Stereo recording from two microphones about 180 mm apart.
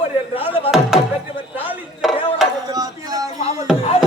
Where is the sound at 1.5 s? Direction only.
10° right (ahead or behind).